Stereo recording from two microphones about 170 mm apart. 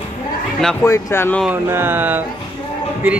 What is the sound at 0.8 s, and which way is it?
Speech, 15° left (ahead or behind).